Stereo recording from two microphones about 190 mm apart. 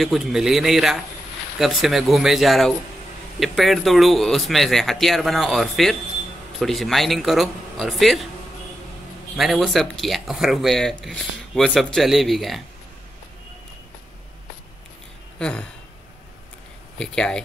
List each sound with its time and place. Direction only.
0.0 s speech: centre (ahead or behind)
9.4 s speech: centre (ahead or behind)
15.3 s speech: 5° left (ahead or behind)
17.0 s speech: 5° left (ahead or behind)